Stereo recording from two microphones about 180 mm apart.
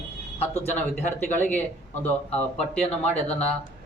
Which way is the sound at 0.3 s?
10° left (ahead or behind).